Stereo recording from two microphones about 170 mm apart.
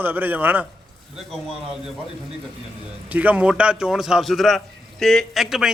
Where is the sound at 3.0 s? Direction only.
10° right (ahead or behind).